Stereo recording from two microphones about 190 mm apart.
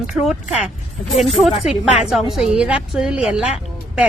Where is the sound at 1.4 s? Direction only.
5° right (ahead or behind).